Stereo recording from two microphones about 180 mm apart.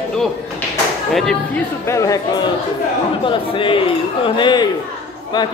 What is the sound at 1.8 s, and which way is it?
A man's voice, 15° left (ahead or behind).